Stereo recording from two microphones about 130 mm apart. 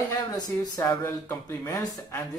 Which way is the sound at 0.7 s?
25° left (ahead or behind).